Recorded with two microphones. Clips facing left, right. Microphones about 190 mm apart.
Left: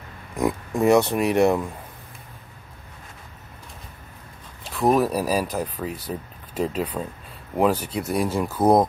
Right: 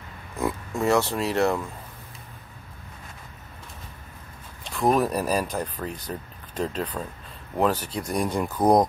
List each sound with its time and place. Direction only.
0.4 s speech: 15° left (ahead or behind)
4.7 s speech: centre (ahead or behind)